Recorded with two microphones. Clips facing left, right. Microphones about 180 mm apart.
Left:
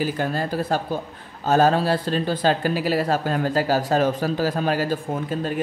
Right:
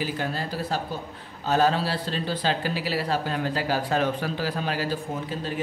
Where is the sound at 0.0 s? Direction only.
45° left (ahead or behind).